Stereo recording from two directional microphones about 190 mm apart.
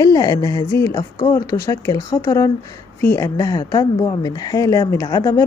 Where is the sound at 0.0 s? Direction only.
20° left (ahead or behind).